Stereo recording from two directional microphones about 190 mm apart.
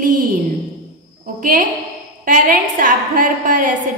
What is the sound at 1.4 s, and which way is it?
A woman's voice, 45° right (ahead or behind).